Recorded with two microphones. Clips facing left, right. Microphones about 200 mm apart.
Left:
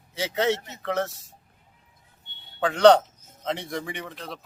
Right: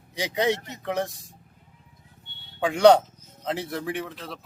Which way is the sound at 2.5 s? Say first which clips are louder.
Even; 10° right (ahead or behind).